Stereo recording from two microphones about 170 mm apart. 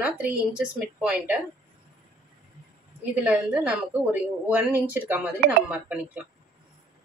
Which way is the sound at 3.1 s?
5° right (ahead or behind).